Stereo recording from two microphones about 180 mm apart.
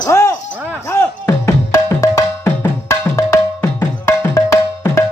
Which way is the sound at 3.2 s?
20° left (ahead or behind).